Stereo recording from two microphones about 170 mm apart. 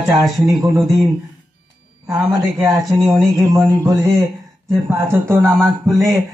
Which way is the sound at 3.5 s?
20° right (ahead or behind).